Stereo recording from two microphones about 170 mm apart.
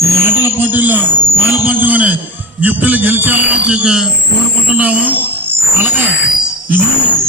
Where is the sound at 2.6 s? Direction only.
10° right (ahead or behind).